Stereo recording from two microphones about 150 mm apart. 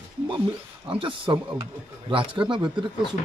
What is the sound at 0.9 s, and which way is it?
A man's voice, 35° right (ahead or behind).